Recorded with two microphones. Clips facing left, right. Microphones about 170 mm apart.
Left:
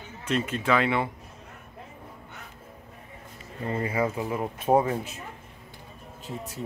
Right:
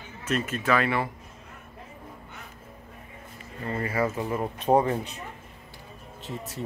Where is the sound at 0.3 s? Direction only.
20° left (ahead or behind).